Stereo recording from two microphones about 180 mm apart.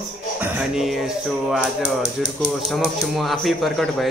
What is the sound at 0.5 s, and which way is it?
Speech, centre (ahead or behind).